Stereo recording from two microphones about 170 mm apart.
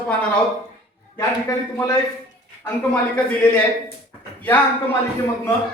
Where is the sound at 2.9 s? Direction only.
10° left (ahead or behind).